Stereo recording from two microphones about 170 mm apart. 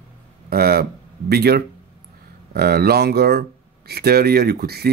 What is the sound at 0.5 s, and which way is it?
Speech, 65° right (ahead or behind).